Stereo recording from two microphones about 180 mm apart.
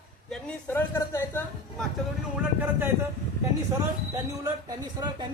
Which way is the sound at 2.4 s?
10° right (ahead or behind).